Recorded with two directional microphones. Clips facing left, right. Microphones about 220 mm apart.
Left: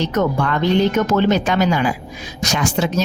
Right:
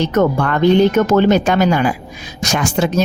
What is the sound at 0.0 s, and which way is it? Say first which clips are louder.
Speech: right 4 dB; 55° right (ahead or behind).